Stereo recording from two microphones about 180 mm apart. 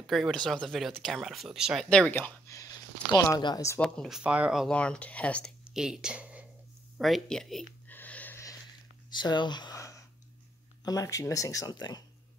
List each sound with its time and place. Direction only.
0.0 s speech: centre (ahead or behind); by 3.8 s 20° left (ahead or behind)
3.8 s speech: 5° left (ahead or behind)
5.6 s speech: 5° right (ahead or behind)
7.0 s a sound: centre (ahead or behind)
9.2 s speech: 25° left (ahead or behind)